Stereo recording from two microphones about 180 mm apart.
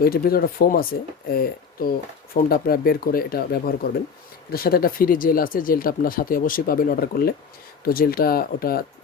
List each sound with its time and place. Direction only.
0.0 s speech: 55° left (ahead or behind)